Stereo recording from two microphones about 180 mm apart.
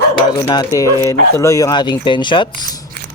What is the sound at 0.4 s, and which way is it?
Speech, 25° left (ahead or behind).